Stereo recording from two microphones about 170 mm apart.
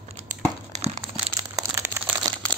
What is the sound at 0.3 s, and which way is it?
Crumpling, 45° right (ahead or behind).